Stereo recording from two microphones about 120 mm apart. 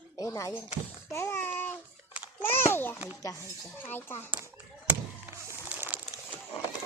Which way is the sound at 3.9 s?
20° left (ahead or behind).